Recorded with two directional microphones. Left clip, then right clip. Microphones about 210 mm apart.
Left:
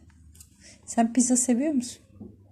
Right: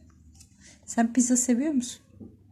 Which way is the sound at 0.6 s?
Centre (ahead or behind).